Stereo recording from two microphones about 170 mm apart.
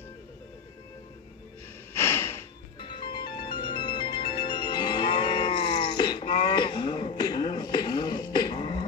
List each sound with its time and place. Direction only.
2.0 s snort: 15° left (ahead or behind)
2.8 s music: 30° left (ahead or behind)